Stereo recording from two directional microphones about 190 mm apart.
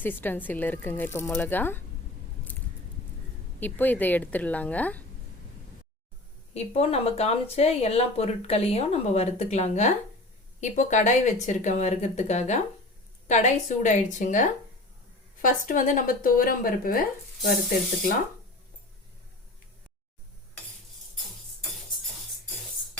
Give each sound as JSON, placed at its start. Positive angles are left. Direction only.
{"t": 0.0, "sound": "a woman's voice", "side_deg": 10}
{"t": 3.6, "sound": "a woman's voice", "side_deg": 10}
{"t": 6.5, "sound": "speech", "side_deg": 35}